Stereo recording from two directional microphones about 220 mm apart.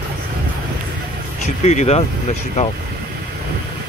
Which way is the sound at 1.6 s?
30° left (ahead or behind).